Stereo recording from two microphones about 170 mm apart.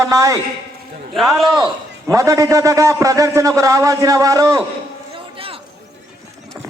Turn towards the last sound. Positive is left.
turn(degrees=-30)  # may be behind; listen again after turning